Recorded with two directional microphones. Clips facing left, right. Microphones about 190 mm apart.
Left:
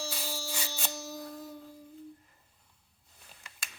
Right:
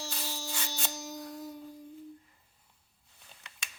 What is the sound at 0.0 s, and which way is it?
Music, 20° right (ahead or behind).